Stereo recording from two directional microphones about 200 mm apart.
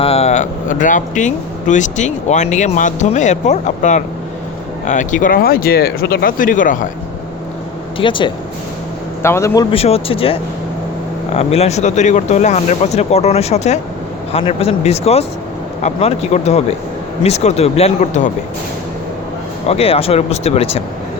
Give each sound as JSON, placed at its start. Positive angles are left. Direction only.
{"t": 0.0, "sound": "speech", "side_deg": 30}
{"t": 7.9, "sound": "speech", "side_deg": 25}
{"t": 9.2, "sound": "a man's voice", "side_deg": 15}
{"t": 9.7, "sound": "speech", "side_deg": 30}
{"t": 11.3, "sound": "speech", "side_deg": 30}
{"t": 19.6, "sound": "speech", "side_deg": 30}